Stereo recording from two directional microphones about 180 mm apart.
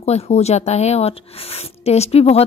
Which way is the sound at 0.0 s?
35° left (ahead or behind).